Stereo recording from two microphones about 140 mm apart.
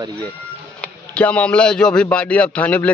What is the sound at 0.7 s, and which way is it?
A man's voice, 10° left (ahead or behind).